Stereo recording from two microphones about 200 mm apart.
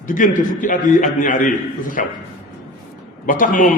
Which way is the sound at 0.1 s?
40° left (ahead or behind).